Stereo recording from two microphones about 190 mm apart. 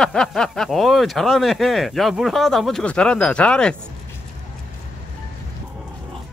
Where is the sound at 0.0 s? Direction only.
5° left (ahead or behind).